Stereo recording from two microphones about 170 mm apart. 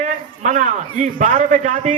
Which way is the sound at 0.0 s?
45° right (ahead or behind).